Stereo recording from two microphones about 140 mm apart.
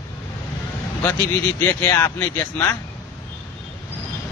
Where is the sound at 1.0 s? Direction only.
15° left (ahead or behind).